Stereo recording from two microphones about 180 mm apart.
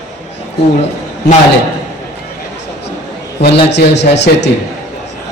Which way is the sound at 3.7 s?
75° left (ahead or behind).